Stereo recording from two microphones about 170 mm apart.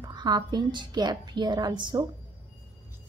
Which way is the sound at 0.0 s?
25° right (ahead or behind).